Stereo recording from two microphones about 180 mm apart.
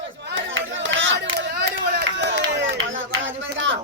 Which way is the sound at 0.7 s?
90° right.